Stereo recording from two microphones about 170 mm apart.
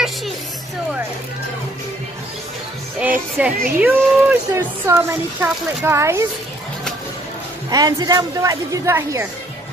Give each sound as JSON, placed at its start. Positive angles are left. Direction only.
{"t": 3.0, "sound": "speech", "side_deg": -10}
{"t": 7.7, "sound": "a woman's voice", "side_deg": -20}